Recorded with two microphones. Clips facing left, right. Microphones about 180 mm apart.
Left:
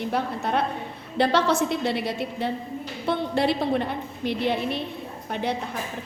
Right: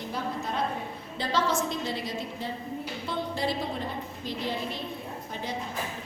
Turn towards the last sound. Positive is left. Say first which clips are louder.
# left 7 dB
turn(degrees=65)  # may be behind; listen again after turning